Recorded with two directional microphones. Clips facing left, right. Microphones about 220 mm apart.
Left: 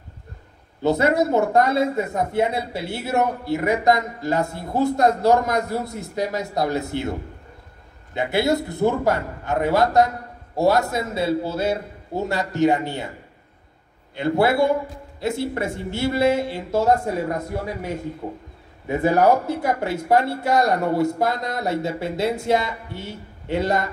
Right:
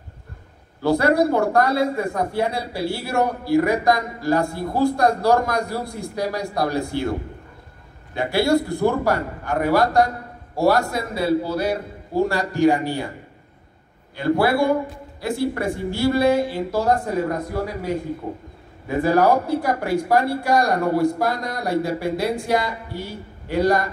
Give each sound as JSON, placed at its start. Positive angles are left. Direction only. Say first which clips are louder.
{"t": 0.8, "sound": "a man's voice", "louder": "right 1 dB", "side_deg": 20}
{"t": 14.1, "sound": "a man's voice", "louder": "even", "side_deg": 25}
{"t": 18.9, "sound": "a man's voice", "louder": "even", "side_deg": 25}